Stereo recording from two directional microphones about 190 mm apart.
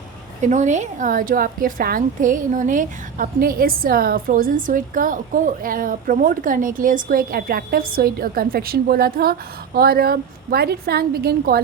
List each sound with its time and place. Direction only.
0.4 s a woman's voice: 40° right (ahead or behind)